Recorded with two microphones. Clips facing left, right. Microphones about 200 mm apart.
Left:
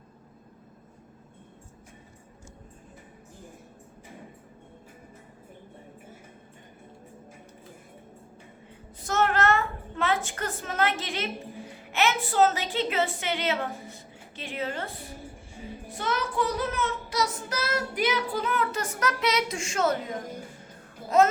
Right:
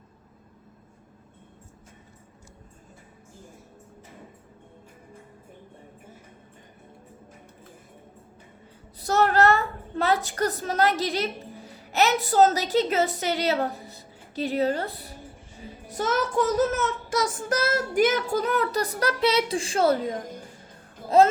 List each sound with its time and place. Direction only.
9.0 s a woman's voice: 35° right (ahead or behind)
15.9 s child singing: 40° right (ahead or behind)